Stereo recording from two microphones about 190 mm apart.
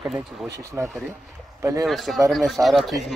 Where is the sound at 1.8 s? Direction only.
Centre (ahead or behind).